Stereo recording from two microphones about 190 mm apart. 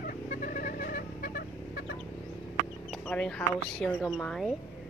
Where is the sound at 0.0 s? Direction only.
45° left (ahead or behind).